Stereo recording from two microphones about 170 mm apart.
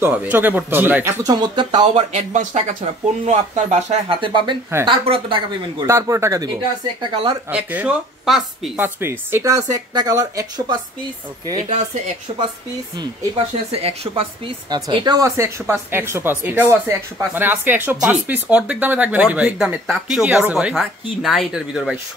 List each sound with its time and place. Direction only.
0.0 s speech: 10° right (ahead or behind); by 2.0 s 30° right (ahead or behind)
2.1 s speech: 40° right (ahead or behind)
5.9 s speech: 15° right (ahead or behind)
7.5 s speech: 10° right (ahead or behind)
8.8 s speech: 15° right (ahead or behind)
12.3 s speech: 30° right (ahead or behind)
13.7 s speech: 35° right (ahead or behind); by 21.9 s 5° right (ahead or behind)